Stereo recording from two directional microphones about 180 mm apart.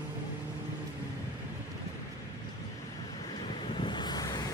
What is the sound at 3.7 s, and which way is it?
Vehicle, 25° left (ahead or behind).